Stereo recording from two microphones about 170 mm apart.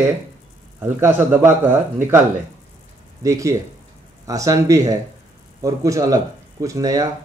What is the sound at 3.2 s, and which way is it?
Speech, 20° right (ahead or behind).